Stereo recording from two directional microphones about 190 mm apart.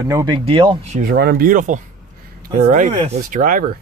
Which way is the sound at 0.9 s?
50° right (ahead or behind).